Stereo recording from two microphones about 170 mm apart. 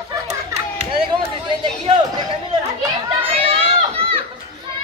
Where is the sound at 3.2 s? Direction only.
35° right (ahead or behind).